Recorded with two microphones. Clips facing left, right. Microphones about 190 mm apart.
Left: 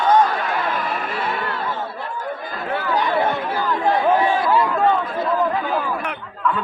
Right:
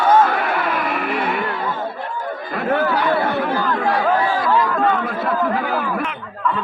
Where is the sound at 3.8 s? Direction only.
20° left (ahead or behind).